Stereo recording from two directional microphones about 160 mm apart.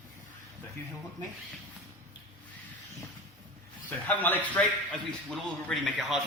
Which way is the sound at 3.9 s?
10° left (ahead or behind).